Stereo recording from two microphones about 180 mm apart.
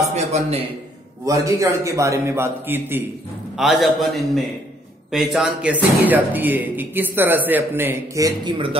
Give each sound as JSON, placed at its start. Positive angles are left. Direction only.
{"t": 0.1, "sound": "a man's voice", "side_deg": -40}
{"t": 1.2, "sound": "speech", "side_deg": -20}
{"t": 3.5, "sound": "a man's voice", "side_deg": 0}